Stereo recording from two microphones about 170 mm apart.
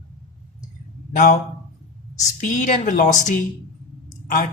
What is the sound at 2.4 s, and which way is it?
Speech, 50° left (ahead or behind).